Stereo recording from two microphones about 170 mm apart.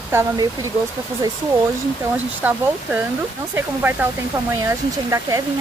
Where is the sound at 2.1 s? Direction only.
10° right (ahead or behind).